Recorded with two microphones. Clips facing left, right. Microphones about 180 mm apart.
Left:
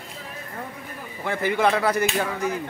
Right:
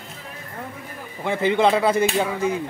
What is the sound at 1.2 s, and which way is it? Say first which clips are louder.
Speech: right 3 dB; 20° right (ahead or behind).